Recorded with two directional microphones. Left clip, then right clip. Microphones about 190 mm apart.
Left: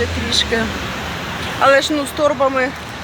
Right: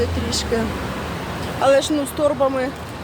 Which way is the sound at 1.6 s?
10° left (ahead or behind).